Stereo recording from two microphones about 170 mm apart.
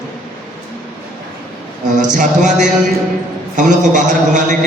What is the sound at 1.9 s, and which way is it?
A man's voice, 45° right (ahead or behind).